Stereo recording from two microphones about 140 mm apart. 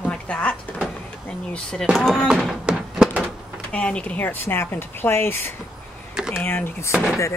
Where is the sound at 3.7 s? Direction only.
10° left (ahead or behind).